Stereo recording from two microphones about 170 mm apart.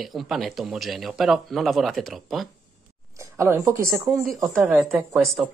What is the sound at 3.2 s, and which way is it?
Speech, 15° right (ahead or behind).